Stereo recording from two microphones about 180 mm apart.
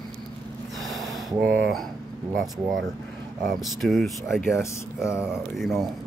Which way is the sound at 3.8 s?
Centre (ahead or behind).